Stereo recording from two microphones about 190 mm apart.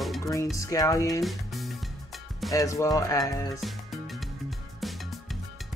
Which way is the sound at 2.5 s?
15° left (ahead or behind).